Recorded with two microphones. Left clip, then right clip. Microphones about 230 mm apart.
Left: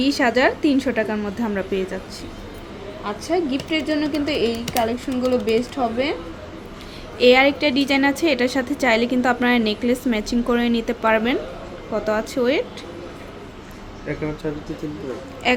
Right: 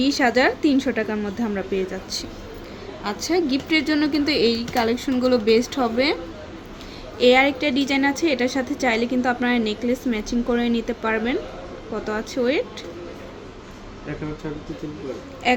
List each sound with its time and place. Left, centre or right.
0.0 s a woman's voice: centre
3.2 s speech: centre
7.2 s a woman's voice: centre
15.4 s a woman's voice: centre